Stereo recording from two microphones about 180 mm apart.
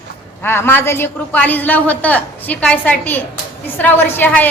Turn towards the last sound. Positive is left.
turn(degrees=10)  # may be behind; listen again after turning